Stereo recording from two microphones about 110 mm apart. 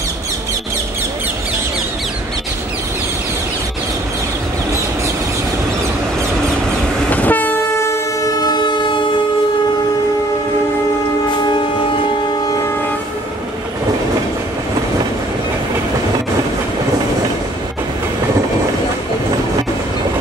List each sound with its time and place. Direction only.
7.1 s train: 15° left (ahead or behind)
8.5 s vehicle: 45° left (ahead or behind)